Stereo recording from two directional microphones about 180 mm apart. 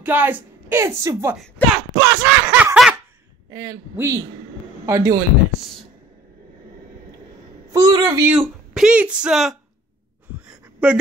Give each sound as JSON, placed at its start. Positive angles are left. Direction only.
{"t": 0.0, "sound": "a woman's voice", "side_deg": -10}
{"t": 2.0, "sound": "a sound", "side_deg": -10}
{"t": 3.4, "sound": "a woman's voice", "side_deg": -15}
{"t": 7.7, "sound": "a woman's voice", "side_deg": -20}
{"t": 8.3, "sound": "speech", "side_deg": -5}
{"t": 10.3, "sound": "a sound", "side_deg": -5}